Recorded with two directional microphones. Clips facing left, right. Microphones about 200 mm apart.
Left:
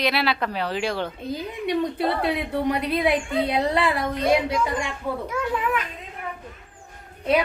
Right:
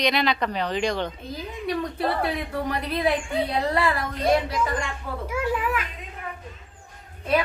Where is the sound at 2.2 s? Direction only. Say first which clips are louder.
Left 3 dB; 20° left (ahead or behind).